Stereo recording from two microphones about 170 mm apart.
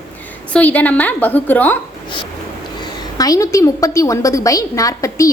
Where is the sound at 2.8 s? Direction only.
20° left (ahead or behind).